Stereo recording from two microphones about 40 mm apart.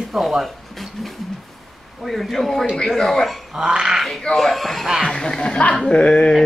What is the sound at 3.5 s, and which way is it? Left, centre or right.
Speech, centre.